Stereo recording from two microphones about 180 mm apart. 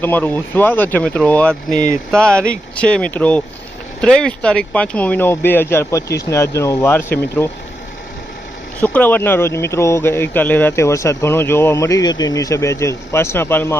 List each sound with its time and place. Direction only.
0.0 s speech: 10° left (ahead or behind)
1.8 s speech: 20° right (ahead or behind)
2.7 s speech: 5° left (ahead or behind)
8.8 s speech: 10° left (ahead or behind)